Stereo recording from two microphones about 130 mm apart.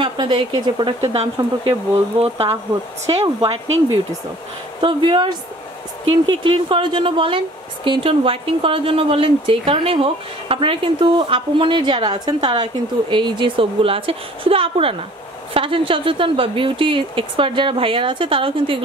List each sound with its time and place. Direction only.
0.0 s speech: 40° right (ahead or behind)
1.0 s a woman's voice: 50° right (ahead or behind)
4.8 s a woman's voice: 35° right (ahead or behind)